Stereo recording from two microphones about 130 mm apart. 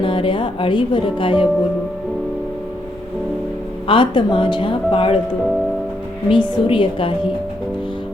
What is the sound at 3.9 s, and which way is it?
Speech, 40° left (ahead or behind).